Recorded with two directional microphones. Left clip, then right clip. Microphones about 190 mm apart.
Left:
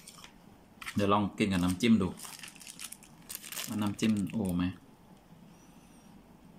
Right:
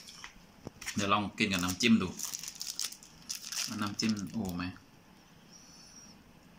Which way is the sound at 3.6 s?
20° left (ahead or behind).